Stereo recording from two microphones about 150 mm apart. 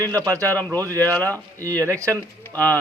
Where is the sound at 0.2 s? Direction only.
20° right (ahead or behind).